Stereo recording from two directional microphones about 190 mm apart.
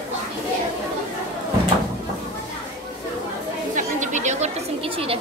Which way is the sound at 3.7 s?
40° right (ahead or behind).